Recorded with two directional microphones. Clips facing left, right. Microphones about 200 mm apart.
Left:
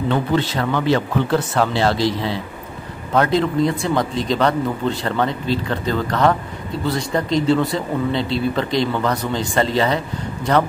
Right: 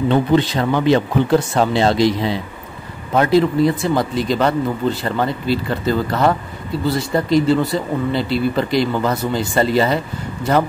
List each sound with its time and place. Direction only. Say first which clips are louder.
0.1 s speech: right 4 dB; 20° right (ahead or behind)